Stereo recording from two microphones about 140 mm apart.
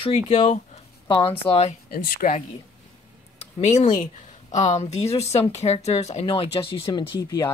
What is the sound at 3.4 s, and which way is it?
Speech, 55° left (ahead or behind).